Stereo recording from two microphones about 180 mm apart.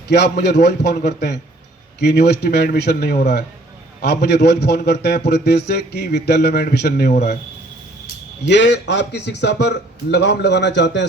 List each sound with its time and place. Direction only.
0.1 s a man's voice: 65° left (ahead or behind)
7.1 s speech: 40° left (ahead or behind)
8.4 s a man's voice: 80° left